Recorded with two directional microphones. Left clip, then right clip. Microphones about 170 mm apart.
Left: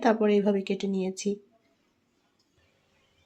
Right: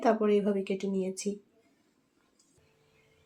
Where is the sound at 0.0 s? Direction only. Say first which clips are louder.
Left 3 dB; 45° left (ahead or behind).